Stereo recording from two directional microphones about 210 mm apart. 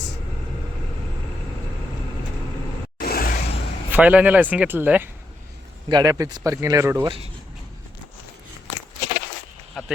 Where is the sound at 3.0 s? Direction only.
45° left (ahead or behind).